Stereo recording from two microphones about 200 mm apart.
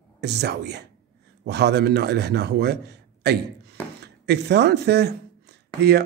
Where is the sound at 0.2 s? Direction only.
55° right (ahead or behind).